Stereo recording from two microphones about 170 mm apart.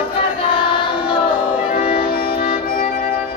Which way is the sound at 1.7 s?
30° left (ahead or behind).